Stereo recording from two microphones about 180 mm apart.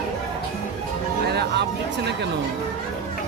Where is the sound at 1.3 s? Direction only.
65° right (ahead or behind).